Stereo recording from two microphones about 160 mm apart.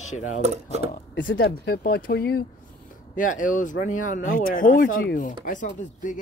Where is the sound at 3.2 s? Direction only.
55° left (ahead or behind).